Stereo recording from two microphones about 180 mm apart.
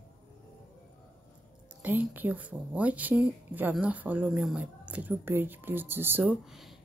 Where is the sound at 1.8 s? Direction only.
10° right (ahead or behind).